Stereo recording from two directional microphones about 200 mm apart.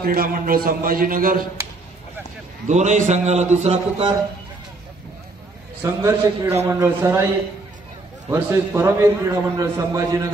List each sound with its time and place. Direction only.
0.0 s a man's voice: 45° right (ahead or behind)
2.7 s a man's voice: 35° right (ahead or behind)
5.8 s a man's voice: 10° right (ahead or behind)
8.3 s a man's voice: 10° right (ahead or behind)